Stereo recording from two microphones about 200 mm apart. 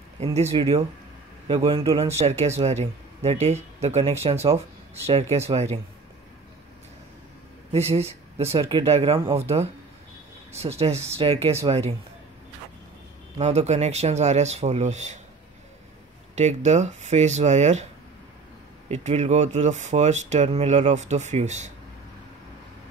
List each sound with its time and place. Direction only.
0.2 s speech: 30° right (ahead or behind)
7.7 s speech: 30° right (ahead or behind)
10.6 s speech: 30° right (ahead or behind)
13.4 s speech: 35° right (ahead or behind)
16.3 s speech: 35° right (ahead or behind)
18.9 s speech: 35° right (ahead or behind)